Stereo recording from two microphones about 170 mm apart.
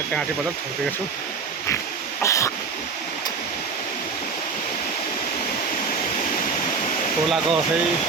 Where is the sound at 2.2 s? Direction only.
15° left (ahead or behind).